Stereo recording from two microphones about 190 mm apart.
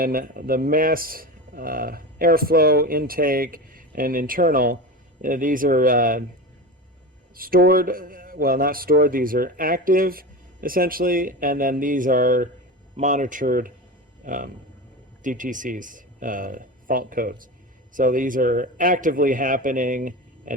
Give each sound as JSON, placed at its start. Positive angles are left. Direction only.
{"t": 0.0, "sound": "speech", "side_deg": -50}
{"t": 7.3, "sound": "speech", "side_deg": -50}